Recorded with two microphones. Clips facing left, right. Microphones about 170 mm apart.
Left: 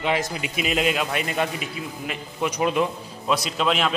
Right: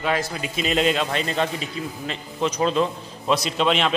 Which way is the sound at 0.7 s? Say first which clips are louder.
Right 2 dB; 5° left (ahead or behind).